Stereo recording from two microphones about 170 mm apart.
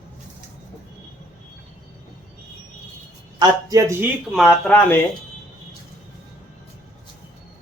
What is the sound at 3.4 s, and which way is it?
Speech, 20° right (ahead or behind).